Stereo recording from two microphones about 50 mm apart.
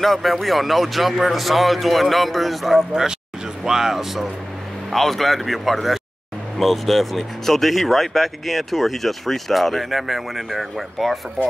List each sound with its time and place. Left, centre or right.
0.0 s speech: centre